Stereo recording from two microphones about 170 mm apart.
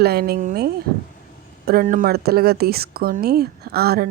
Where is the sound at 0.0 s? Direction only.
65° right (ahead or behind).